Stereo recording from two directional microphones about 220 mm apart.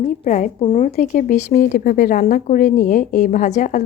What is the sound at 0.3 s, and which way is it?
Speech, 35° left (ahead or behind).